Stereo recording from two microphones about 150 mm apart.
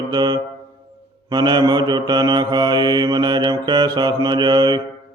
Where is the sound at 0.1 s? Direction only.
30° right (ahead or behind).